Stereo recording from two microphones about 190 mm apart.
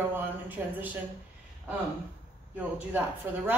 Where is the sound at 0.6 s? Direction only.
15° right (ahead or behind).